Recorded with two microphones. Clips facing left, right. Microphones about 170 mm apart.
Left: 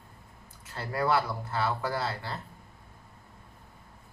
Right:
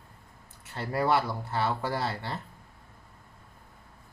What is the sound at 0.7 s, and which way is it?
Speech, 25° right (ahead or behind).